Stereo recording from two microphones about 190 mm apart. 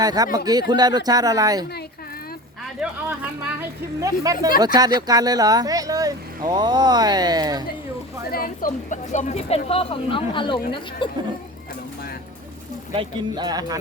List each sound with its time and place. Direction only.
0.0 s speech: 20° right (ahead or behind)
2.8 s a sound: 5° right (ahead or behind)
4.0 s speech: 20° right (ahead or behind)
8.3 s a woman's voice: 50° left (ahead or behind); by 11.1 s 25° left (ahead or behind)
12.9 s speech: 25° right (ahead or behind)